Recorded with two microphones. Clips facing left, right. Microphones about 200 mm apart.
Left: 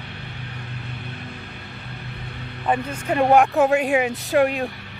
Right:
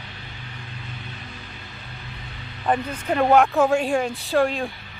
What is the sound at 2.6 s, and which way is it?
Speech, 5° left (ahead or behind).